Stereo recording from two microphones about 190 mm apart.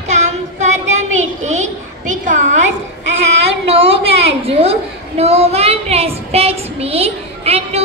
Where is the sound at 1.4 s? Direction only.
40° right (ahead or behind).